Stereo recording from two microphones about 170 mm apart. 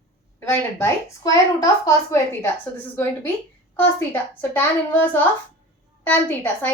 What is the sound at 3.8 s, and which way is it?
A woman's voice, 10° left (ahead or behind).